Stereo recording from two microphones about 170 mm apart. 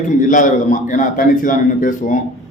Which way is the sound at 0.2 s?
50° left (ahead or behind).